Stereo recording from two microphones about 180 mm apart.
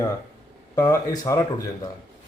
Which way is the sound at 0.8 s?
20° left (ahead or behind).